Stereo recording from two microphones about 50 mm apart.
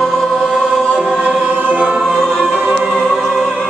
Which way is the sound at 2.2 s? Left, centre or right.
Centre.